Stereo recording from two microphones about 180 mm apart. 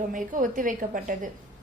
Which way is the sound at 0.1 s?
45° right (ahead or behind).